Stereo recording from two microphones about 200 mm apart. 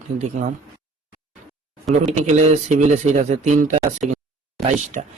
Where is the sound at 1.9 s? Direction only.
35° right (ahead or behind).